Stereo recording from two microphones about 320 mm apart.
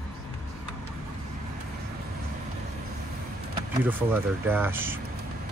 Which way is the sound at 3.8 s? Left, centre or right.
Centre.